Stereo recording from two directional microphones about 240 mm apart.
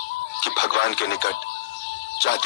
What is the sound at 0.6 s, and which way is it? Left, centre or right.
Speech, left.